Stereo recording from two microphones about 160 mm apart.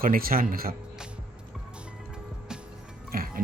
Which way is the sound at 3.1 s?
65° right (ahead or behind).